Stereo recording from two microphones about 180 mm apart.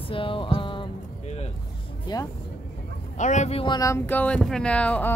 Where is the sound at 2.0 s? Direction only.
20° left (ahead or behind).